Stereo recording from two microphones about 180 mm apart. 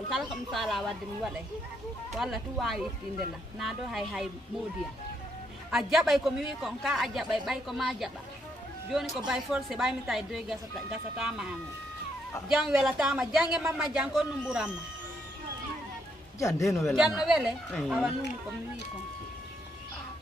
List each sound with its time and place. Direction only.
0.1 s a man's voice: centre (ahead or behind)
5.7 s a man's voice: centre (ahead or behind)
9.1 s a man's voice: 5° right (ahead or behind)
16.3 s a man's voice: 15° left (ahead or behind)
16.6 s a man's voice: centre (ahead or behind)